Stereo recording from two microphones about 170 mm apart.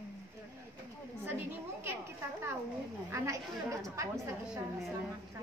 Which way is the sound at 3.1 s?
15° right (ahead or behind).